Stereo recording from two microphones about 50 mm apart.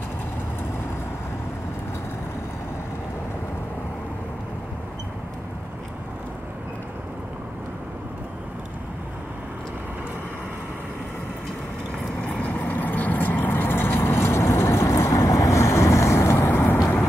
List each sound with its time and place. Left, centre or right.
12.3 s vehicle: left
16.4 s vehicle: left